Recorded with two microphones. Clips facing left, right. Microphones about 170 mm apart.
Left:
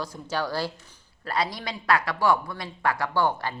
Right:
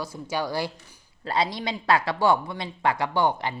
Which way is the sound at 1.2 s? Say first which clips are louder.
Right 2 dB; 25° right (ahead or behind).